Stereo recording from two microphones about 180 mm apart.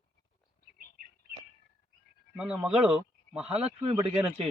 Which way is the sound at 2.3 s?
5° right (ahead or behind).